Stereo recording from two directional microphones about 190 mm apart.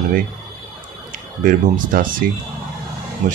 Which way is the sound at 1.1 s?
45° right (ahead or behind).